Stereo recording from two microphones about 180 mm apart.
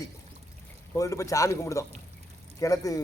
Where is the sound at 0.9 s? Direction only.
20° left (ahead or behind).